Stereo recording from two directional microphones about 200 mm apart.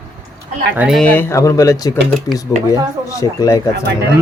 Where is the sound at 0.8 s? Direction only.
Centre (ahead or behind); by 3.6 s 15° left (ahead or behind).